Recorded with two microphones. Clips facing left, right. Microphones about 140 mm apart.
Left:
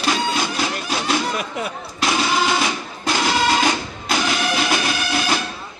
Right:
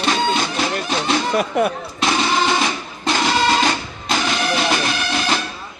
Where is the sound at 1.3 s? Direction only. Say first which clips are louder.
Right 8 dB; 50° right (ahead or behind).